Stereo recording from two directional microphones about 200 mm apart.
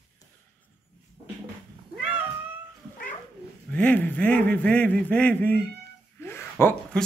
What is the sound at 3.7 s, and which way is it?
A man's voice, 5° left (ahead or behind).